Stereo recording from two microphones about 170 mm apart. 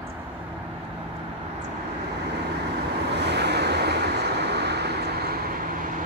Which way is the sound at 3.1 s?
80° right.